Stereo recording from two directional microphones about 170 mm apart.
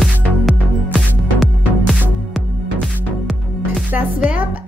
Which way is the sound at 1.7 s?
Centre (ahead or behind).